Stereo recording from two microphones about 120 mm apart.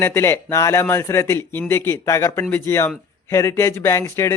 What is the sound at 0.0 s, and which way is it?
Speech, 20° left (ahead or behind).